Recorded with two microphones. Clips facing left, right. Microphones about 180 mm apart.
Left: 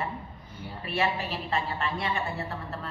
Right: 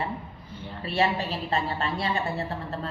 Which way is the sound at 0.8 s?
35° right (ahead or behind).